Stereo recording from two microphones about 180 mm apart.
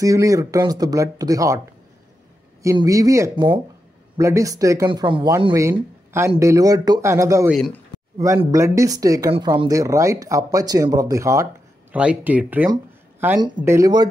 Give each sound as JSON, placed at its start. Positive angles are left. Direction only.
{"t": 0.0, "sound": "speech", "side_deg": -20}
{"t": 2.6, "sound": "speech", "side_deg": -15}
{"t": 11.9, "sound": "speech", "side_deg": -5}